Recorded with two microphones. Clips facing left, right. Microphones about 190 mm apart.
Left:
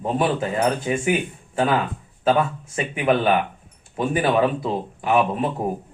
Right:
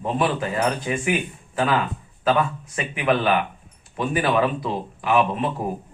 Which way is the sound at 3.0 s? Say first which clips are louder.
Left 1 dB; 30° left (ahead or behind).